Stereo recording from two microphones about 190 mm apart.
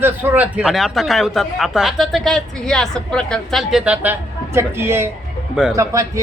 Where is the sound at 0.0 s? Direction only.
10° right (ahead or behind).